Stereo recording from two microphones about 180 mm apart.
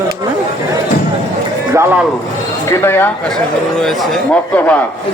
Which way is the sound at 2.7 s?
10° left (ahead or behind).